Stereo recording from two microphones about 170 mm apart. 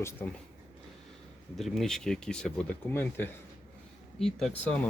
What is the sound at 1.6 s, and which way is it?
Speech, centre (ahead or behind).